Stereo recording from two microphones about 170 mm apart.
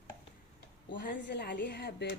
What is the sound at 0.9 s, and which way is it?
Speech, 80° left.